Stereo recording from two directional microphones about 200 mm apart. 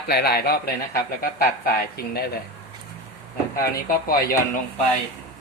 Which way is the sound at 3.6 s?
50° left (ahead or behind).